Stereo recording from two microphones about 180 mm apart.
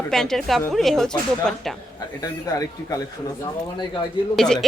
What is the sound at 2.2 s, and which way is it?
Speech, 20° left (ahead or behind).